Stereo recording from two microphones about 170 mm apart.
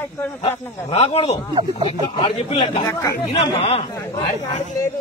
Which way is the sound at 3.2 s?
40° left (ahead or behind).